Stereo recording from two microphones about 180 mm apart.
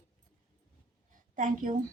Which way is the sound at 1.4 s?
45° right (ahead or behind).